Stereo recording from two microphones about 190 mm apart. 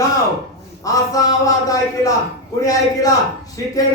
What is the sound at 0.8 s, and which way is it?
A man's voice, 20° left (ahead or behind).